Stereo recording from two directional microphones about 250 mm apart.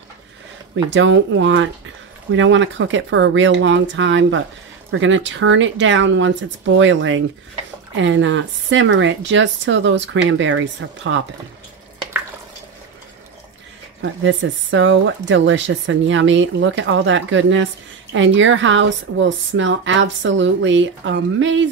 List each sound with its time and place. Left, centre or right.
0.8 s speech: right
14.2 s speech: right